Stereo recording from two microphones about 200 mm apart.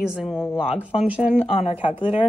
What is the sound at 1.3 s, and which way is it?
Speech, 30° left (ahead or behind).